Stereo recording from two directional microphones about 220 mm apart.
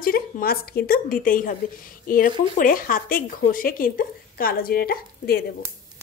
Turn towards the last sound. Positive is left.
turn(degrees=45)  # may be behind; listen again after turning